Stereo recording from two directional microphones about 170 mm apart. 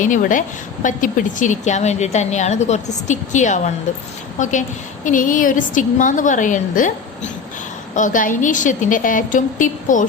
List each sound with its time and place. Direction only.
0.0 s a woman's voice: 50° left (ahead or behind)
7.9 s a woman's voice: 50° left (ahead or behind)